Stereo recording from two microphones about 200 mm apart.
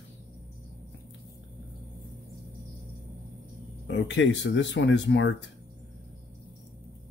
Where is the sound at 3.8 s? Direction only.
65° left (ahead or behind).